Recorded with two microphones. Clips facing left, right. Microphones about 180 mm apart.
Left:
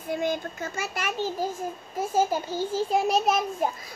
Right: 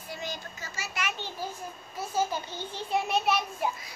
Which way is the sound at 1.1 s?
45° left (ahead or behind).